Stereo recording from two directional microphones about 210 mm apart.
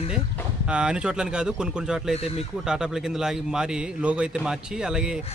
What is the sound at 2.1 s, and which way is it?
Speech, 30° left (ahead or behind).